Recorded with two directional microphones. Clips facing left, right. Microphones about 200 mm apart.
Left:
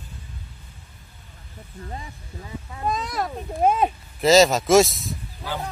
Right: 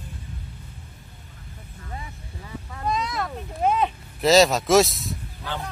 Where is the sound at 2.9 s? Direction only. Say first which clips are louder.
Left 1 dB; 45° left (ahead or behind).